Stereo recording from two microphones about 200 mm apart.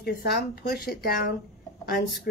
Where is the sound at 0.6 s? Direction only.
50° left (ahead or behind).